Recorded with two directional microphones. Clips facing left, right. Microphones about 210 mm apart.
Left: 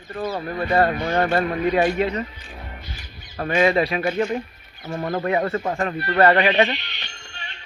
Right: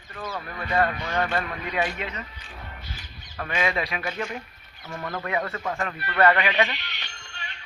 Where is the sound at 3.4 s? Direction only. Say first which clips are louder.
Left 9 dB; 35° left (ahead or behind).